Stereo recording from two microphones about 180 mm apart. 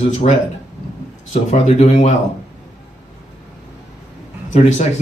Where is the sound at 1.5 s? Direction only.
35° left (ahead or behind).